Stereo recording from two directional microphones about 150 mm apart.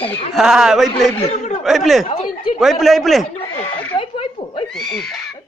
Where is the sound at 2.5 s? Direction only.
Centre (ahead or behind).